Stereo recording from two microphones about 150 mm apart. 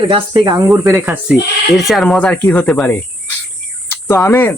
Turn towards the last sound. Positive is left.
turn(degrees=15)  # may be behind; listen again after turning